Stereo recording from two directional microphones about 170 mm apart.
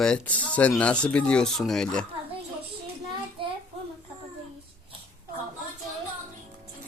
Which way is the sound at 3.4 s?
30° right (ahead or behind).